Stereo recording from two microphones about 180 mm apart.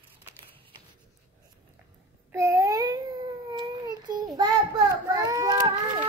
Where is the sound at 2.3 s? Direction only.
15° right (ahead or behind).